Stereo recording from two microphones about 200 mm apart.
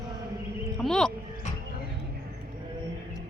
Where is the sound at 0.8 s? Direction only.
5° left (ahead or behind).